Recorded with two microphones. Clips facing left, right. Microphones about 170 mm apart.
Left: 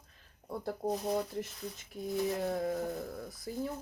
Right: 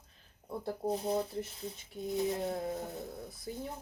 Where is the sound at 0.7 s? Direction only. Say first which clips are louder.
Even; 25° right (ahead or behind).